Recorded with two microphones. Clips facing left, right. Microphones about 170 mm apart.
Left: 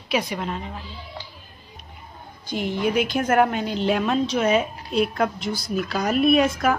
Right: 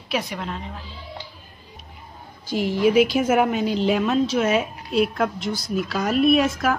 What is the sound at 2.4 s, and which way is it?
A woman's voice, 5° right (ahead or behind).